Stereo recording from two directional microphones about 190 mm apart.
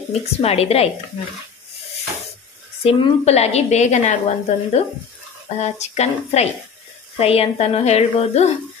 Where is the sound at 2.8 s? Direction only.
30° left (ahead or behind).